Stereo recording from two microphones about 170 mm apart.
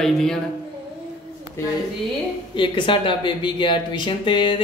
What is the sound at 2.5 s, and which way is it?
Speech, 30° left (ahead or behind).